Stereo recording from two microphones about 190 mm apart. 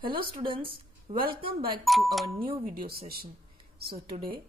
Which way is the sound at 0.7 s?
50° right (ahead or behind).